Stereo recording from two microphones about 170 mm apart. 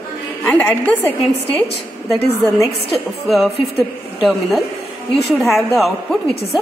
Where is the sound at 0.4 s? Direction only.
10° left (ahead or behind).